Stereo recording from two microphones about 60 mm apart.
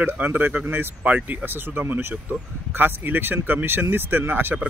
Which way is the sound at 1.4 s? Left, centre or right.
Right.